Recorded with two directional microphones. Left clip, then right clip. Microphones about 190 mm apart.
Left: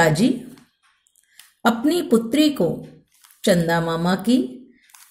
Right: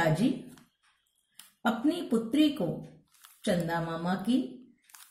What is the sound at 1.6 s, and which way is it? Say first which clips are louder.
Speech: left 10 dB; 45° left (ahead or behind).